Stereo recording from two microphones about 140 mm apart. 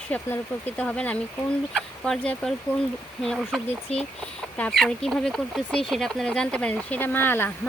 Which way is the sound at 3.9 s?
50° left (ahead or behind).